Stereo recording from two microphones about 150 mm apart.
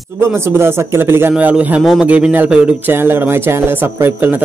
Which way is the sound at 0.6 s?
15° right (ahead or behind).